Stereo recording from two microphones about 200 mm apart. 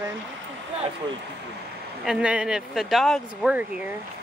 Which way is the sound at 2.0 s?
5° right (ahead or behind).